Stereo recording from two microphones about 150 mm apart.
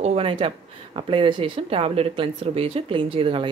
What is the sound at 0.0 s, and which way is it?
Speech, 40° right (ahead or behind).